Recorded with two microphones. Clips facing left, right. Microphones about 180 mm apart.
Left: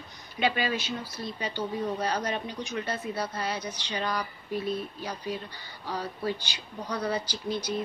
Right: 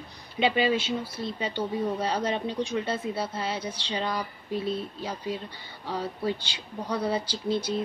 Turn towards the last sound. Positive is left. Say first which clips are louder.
# right 3 dB
turn(degrees=-25)  # may be behind; listen again after turning